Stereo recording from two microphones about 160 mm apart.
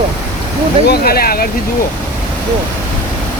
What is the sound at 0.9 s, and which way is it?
Speech, 70° left (ahead or behind).